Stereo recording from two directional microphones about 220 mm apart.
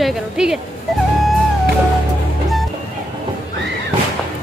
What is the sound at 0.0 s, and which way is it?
Speech, centre (ahead or behind).